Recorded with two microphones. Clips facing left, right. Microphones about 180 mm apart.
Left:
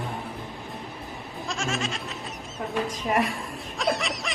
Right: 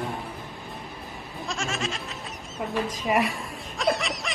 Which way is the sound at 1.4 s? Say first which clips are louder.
Left 1 dB; centre (ahead or behind).